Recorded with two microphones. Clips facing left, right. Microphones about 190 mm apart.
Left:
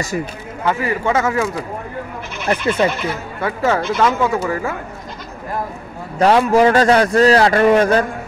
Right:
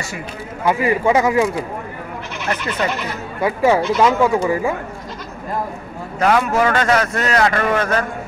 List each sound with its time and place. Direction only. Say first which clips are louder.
0.7 s speech: right 3 dB; 15° right (ahead or behind)
2.4 s speech: left 6 dB; 30° left (ahead or behind)
3.3 s speech: right 4 dB; 10° right (ahead or behind)
6.1 s a man's voice: left 4 dB; 35° left (ahead or behind)